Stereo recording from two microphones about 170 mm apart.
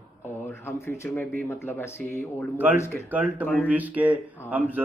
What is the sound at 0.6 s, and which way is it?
Speech, 15° left (ahead or behind).